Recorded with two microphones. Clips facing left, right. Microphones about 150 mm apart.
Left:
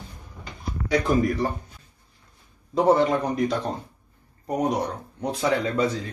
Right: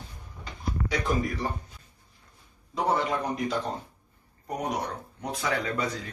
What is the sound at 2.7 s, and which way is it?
Speech, 35° left (ahead or behind).